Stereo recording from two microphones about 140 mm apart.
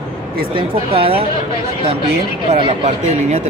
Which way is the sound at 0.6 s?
40° right (ahead or behind).